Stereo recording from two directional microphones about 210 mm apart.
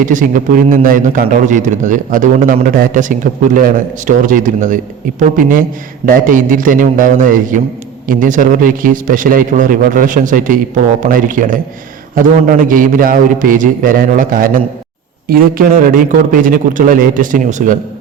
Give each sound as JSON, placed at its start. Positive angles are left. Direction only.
{"t": 0.0, "sound": "a man's voice", "side_deg": -40}